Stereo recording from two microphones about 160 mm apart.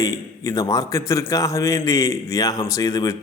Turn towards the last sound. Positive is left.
turn(degrees=20)  # may be behind; listen again after turning